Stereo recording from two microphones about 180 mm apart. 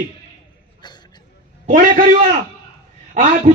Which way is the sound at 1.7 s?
50° right (ahead or behind).